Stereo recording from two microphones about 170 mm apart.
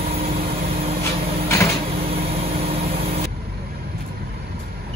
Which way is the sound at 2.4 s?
35° right (ahead or behind).